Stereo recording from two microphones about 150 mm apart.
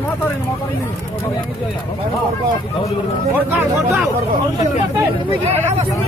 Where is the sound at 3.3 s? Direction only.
10° right (ahead or behind).